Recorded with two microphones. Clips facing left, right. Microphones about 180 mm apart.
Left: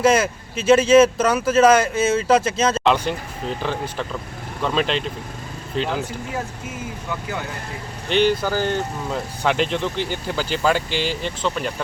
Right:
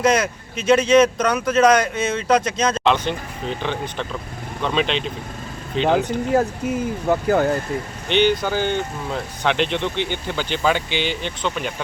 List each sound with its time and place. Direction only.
0.0 s speech: 5° left (ahead or behind)
7.1 s speech: 50° right (ahead or behind)
8.1 s speech: centre (ahead or behind)